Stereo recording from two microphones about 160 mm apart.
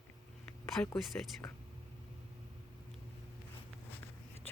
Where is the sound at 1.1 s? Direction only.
10° left (ahead or behind).